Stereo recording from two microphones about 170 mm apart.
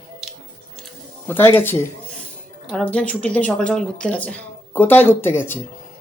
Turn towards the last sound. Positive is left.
turn(degrees=15)  # may be behind; listen again after turning